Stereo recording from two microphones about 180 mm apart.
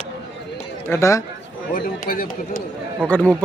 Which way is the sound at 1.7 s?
50° left (ahead or behind).